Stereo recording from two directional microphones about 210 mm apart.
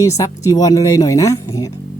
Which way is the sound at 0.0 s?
15° left (ahead or behind).